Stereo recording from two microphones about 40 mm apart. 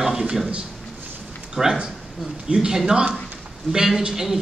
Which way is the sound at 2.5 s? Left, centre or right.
Centre.